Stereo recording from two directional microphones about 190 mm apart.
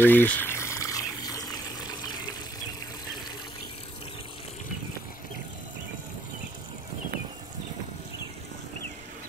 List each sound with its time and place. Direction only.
0.0 s water: 10° left (ahead or behind)